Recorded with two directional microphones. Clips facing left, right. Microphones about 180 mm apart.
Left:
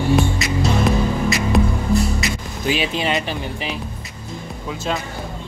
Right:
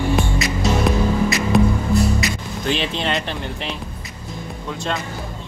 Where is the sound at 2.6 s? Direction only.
5° left (ahead or behind).